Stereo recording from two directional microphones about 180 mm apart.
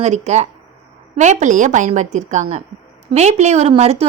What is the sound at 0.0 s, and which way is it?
A woman's voice, 40° right (ahead or behind).